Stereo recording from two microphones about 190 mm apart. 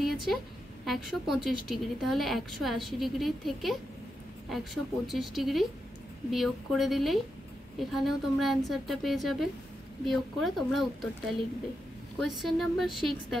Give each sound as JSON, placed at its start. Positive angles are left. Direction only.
{"t": 0.0, "sound": "a sound", "side_deg": 0}
{"t": 0.8, "sound": "a woman's voice", "side_deg": 0}
{"t": 5.0, "sound": "a woman's voice", "side_deg": 0}
{"t": 12.2, "sound": "a woman's voice", "side_deg": 0}